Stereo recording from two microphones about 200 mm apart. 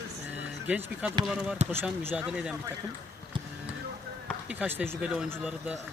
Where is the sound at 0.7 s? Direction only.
5° right (ahead or behind).